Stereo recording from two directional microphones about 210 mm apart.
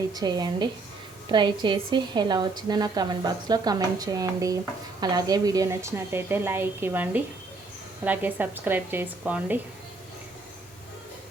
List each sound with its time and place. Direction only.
0.1 s a woman's voice: 20° right (ahead or behind)